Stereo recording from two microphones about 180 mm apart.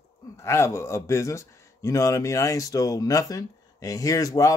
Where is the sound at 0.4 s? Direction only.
15° left (ahead or behind).